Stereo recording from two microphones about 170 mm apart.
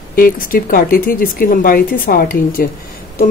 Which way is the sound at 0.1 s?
60° left (ahead or behind).